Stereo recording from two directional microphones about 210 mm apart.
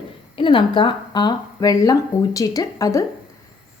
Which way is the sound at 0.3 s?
25° left (ahead or behind).